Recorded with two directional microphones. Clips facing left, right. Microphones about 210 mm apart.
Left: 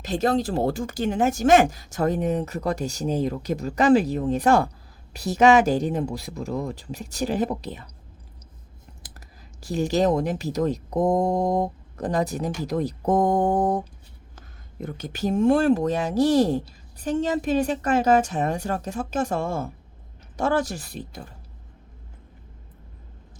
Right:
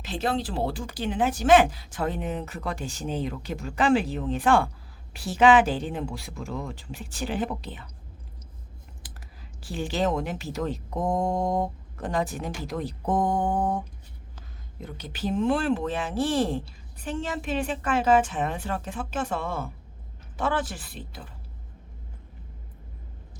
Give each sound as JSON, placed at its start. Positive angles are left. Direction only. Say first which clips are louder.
{"t": 0.0, "sound": "speech", "louder": "left 5 dB", "side_deg": 40}
{"t": 9.6, "sound": "speech", "louder": "left 6 dB", "side_deg": 40}
{"t": 14.3, "sound": "speech", "louder": "left 6 dB", "side_deg": 50}